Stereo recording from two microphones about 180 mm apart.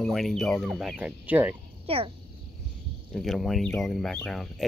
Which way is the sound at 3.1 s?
Centre (ahead or behind).